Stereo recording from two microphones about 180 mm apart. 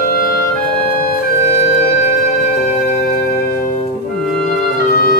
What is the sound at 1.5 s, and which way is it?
Music, 40° left (ahead or behind).